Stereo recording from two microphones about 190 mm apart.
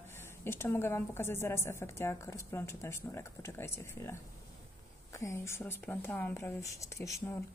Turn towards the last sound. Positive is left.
turn(degrees=15)  # may be behind; listen again after turning